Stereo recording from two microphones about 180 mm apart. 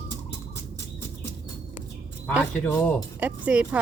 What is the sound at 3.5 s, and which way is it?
Speech, 5° right (ahead or behind).